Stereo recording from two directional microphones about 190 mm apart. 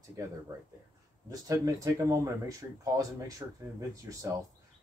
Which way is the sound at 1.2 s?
15° right (ahead or behind).